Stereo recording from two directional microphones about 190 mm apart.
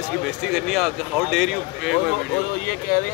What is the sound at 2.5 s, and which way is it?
Speech, 50° left (ahead or behind).